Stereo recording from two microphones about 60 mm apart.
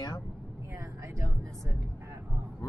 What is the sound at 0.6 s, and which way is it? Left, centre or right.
A woman's voice, right.